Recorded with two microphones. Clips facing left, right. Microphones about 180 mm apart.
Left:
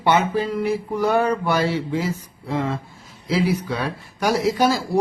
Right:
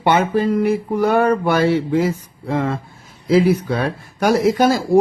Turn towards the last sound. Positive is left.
turn(degrees=-50)  # may be behind; listen again after turning